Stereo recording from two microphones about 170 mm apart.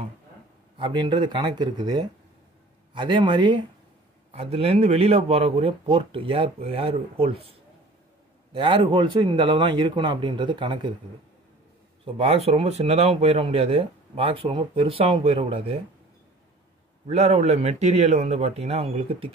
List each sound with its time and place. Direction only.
0.7 s a man's voice: 30° right (ahead or behind)
8.5 s a man's voice: 30° right (ahead or behind)
12.0 s speech: 35° right (ahead or behind)
17.1 s speech: 40° right (ahead or behind)